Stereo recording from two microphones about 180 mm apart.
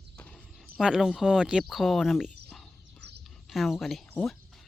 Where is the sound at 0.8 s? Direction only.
5° right (ahead or behind).